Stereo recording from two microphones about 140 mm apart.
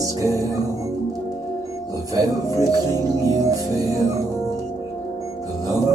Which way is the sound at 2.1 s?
25° right (ahead or behind).